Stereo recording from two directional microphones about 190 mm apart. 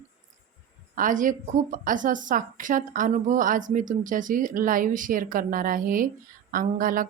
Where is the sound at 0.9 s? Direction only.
45° right (ahead or behind).